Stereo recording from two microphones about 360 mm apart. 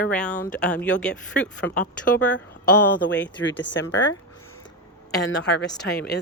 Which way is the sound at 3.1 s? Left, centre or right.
Left.